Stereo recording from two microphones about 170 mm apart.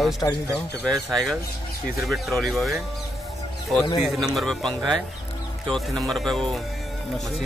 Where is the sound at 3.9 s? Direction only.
Centre (ahead or behind).